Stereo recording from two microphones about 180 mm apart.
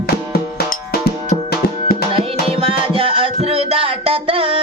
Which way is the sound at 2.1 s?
30° right (ahead or behind).